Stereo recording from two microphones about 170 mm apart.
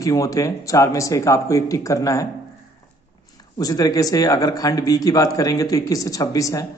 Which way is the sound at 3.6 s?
20° left (ahead or behind).